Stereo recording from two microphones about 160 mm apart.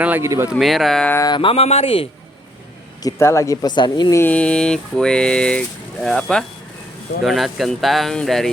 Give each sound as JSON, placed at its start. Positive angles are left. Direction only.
{"t": 0.0, "sound": "speech", "side_deg": -15}
{"t": 0.5, "sound": "speech", "side_deg": 0}
{"t": 1.1, "sound": "speech", "side_deg": 25}
{"t": 3.0, "sound": "a man's voice", "side_deg": 20}
{"t": 4.2, "sound": "speech", "side_deg": 10}